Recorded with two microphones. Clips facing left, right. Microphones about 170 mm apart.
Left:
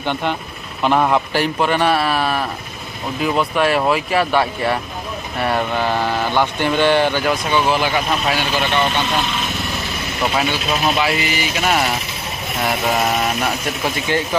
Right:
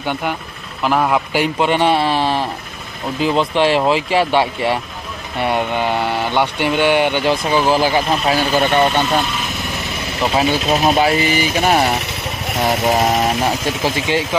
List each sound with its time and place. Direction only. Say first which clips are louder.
0.0 s speech: even; 10° right (ahead or behind)
1.3 s speech: right 2 dB; 20° right (ahead or behind); by 8.8 s 40° right (ahead or behind)
10.4 s speech: right 4 dB; 35° right (ahead or behind)
12.8 s speech: right 3 dB; 25° right (ahead or behind)